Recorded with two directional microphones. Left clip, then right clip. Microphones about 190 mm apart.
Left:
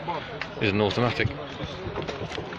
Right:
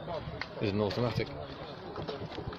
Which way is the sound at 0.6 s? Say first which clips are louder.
Left 8 dB; 5° right (ahead or behind).